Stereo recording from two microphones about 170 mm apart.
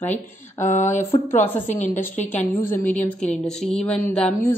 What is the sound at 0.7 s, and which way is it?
Speech, 45° left (ahead or behind).